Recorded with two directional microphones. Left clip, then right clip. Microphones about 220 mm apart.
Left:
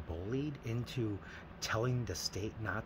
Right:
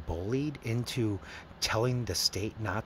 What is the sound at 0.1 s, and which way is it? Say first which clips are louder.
Speech: right 7 dB; 30° right (ahead or behind).